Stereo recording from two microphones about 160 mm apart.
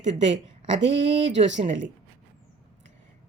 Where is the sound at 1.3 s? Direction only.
45° right (ahead or behind).